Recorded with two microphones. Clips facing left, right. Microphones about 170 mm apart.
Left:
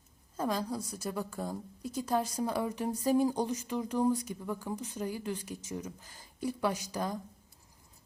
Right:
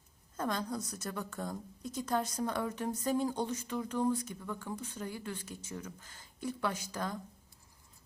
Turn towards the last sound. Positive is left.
turn(degrees=15)  # may be behind; listen again after turning